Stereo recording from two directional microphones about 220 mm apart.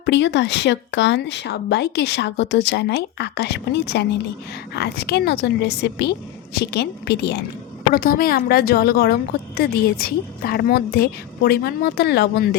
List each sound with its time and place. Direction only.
0.0 s speech: 50° left (ahead or behind)